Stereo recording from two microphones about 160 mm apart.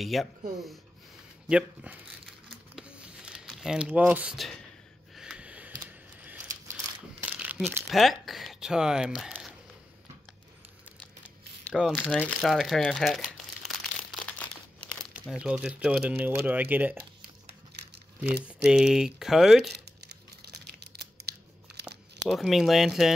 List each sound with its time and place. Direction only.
0.0 s speech: centre (ahead or behind)
1.5 s crumpling: 5° right (ahead or behind)
3.4 s speech: 5° right (ahead or behind)
5.1 s a sound: 5° right (ahead or behind)
7.2 s crumpling: 10° right (ahead or behind)
7.9 s speech: centre (ahead or behind)
11.7 s speech: centre (ahead or behind)
15.1 s speech: 5° right (ahead or behind)
17.5 s a sound: 90° right
18.7 s speech: 5° right (ahead or behind)
20.4 s a sound: 90° right
22.3 s speech: centre (ahead or behind)